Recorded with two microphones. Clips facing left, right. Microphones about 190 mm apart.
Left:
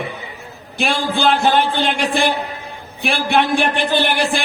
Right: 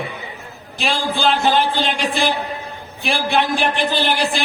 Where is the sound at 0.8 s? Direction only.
50° left (ahead or behind).